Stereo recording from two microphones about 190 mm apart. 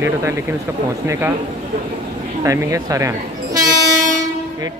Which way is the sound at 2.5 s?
15° right (ahead or behind).